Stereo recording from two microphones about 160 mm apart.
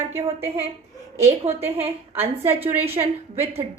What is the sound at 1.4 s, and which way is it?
Speech, 40° right (ahead or behind).